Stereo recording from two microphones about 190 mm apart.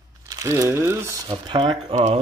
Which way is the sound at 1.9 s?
40° right (ahead or behind).